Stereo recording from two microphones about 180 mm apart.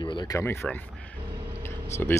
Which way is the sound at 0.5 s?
Centre (ahead or behind).